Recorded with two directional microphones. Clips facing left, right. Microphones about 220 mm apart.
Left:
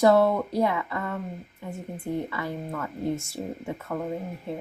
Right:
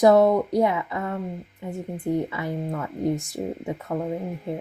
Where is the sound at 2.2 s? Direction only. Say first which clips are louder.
Right 3 dB; 20° right (ahead or behind).